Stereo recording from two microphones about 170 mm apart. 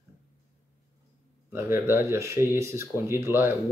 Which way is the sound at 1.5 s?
15° right (ahead or behind).